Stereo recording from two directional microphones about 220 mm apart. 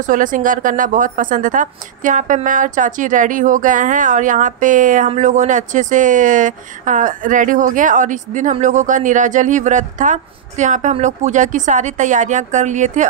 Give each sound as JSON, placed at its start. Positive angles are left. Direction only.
{"t": 0.0, "sound": "a woman's voice", "side_deg": -35}